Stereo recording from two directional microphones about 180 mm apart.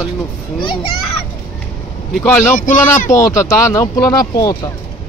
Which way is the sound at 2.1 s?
5° left (ahead or behind).